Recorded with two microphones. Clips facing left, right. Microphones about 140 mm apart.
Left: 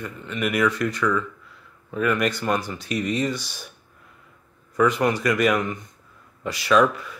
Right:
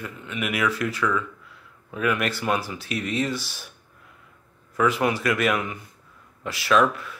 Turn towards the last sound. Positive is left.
turn(degrees=0)  # may be behind; listen again after turning